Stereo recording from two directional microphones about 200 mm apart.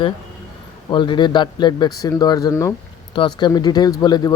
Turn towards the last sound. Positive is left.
turn(degrees=20)  # may be behind; listen again after turning